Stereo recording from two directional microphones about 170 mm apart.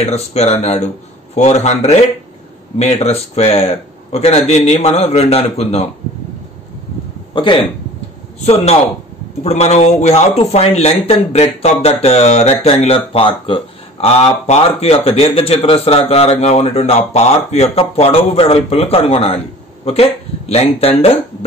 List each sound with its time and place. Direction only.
0.0 s a man's voice: 40° left (ahead or behind)
7.3 s speech: 30° left (ahead or behind)
9.4 s a man's voice: 40° left (ahead or behind)